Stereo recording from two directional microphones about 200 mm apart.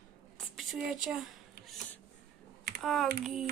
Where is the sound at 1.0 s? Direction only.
Centre (ahead or behind).